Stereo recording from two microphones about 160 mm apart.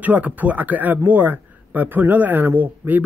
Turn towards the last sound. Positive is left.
turn(degrees=-10)  # may be behind; listen again after turning